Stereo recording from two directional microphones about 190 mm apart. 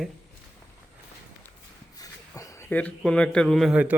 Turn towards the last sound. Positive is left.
turn(degrees=-5)  # may be behind; listen again after turning